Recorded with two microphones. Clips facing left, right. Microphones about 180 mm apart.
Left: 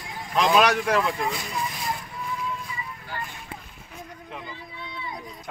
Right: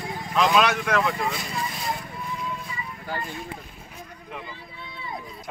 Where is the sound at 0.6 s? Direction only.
35° left (ahead or behind).